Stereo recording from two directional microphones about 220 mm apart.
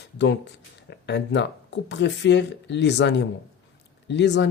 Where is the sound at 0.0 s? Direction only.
50° left (ahead or behind).